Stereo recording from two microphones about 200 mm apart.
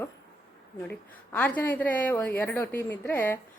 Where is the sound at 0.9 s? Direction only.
10° left (ahead or behind).